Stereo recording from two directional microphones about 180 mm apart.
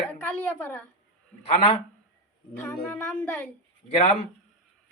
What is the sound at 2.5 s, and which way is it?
Speech, 10° left (ahead or behind).